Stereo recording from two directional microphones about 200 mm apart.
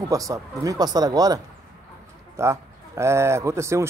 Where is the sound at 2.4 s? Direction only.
15° right (ahead or behind).